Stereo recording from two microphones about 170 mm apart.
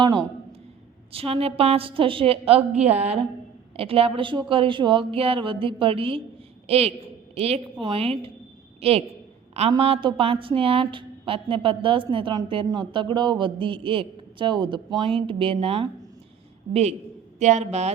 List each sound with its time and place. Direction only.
0.0 s a man's voice: 25° right (ahead or behind)
17.4 s a woman's voice: 45° right (ahead or behind)